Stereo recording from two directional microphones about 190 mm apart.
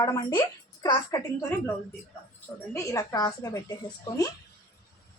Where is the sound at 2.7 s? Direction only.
15° left (ahead or behind).